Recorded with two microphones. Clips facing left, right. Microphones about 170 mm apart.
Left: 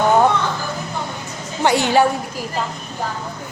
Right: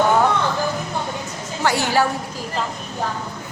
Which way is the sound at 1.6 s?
20° left (ahead or behind).